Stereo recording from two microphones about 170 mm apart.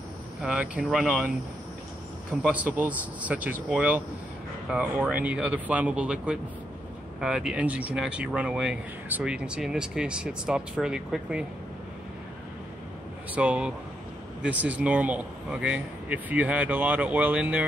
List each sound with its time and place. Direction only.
0.4 s speech: 5° right (ahead or behind)
2.4 s speech: 10° right (ahead or behind)
13.3 s speech: 5° right (ahead or behind)